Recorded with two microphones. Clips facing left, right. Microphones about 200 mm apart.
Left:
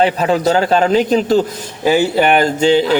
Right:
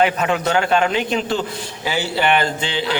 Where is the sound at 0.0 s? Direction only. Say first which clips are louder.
Left 4 dB; 35° left (ahead or behind).